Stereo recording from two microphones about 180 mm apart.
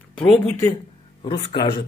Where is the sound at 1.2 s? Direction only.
30° left (ahead or behind).